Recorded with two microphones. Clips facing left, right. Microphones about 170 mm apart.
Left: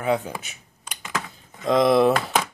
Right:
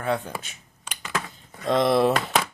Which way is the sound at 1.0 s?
10° left (ahead or behind).